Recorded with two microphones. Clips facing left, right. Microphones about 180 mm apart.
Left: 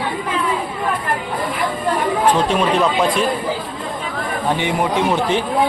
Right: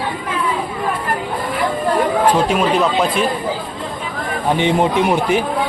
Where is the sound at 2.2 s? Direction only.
5° right (ahead or behind).